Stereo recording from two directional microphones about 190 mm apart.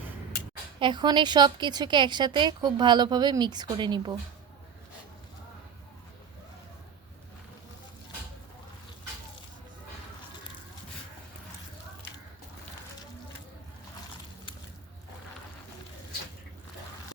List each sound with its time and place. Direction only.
0.8 s a woman's voice: 25° right (ahead or behind)